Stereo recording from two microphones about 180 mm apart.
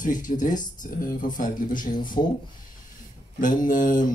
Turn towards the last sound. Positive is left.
turn(degrees=45)  # may be behind; listen again after turning